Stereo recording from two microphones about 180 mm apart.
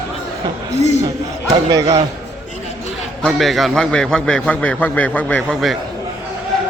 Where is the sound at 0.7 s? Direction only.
40° left (ahead or behind).